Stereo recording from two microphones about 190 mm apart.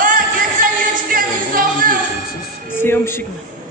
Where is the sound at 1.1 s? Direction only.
45° right (ahead or behind).